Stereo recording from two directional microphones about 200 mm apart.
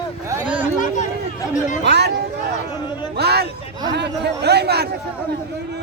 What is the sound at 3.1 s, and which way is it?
Speech, 55° right (ahead or behind).